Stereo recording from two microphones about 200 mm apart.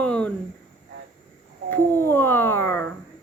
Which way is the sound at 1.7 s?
10° left (ahead or behind).